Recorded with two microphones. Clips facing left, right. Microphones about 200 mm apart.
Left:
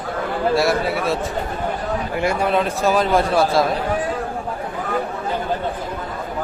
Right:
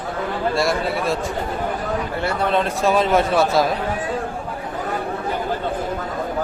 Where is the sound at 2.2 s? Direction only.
10° left (ahead or behind).